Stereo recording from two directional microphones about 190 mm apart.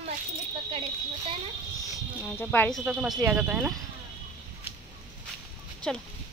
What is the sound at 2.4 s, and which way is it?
Speech, 10° left (ahead or behind).